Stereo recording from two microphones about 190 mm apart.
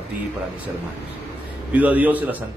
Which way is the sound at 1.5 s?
5° right (ahead or behind).